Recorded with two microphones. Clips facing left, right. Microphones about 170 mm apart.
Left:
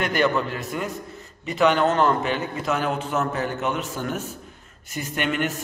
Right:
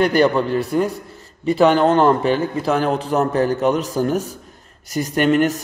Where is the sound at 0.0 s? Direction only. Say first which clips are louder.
Right 7 dB; 35° right (ahead or behind).